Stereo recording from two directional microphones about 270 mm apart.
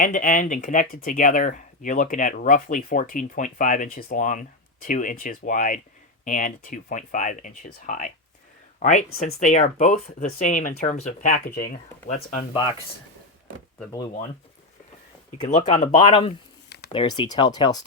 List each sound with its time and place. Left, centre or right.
0.0 s speech: left
15.4 s speech: left
16.6 s a sound: left
16.9 s speech: centre